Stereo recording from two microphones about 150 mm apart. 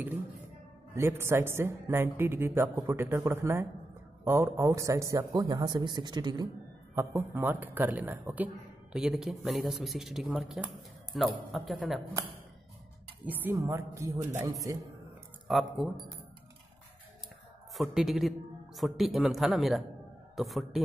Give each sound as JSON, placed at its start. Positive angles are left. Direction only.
{"t": 0.9, "sound": "a man's voice", "side_deg": -15}
{"t": 13.3, "sound": "a man's voice", "side_deg": -10}
{"t": 15.4, "sound": "speech", "side_deg": 0}
{"t": 17.7, "sound": "speech", "side_deg": 0}